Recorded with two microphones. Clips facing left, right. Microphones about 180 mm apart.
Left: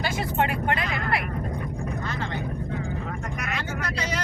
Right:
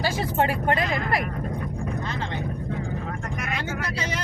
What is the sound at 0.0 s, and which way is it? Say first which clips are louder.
Speech: right 2 dB; 30° right (ahead or behind).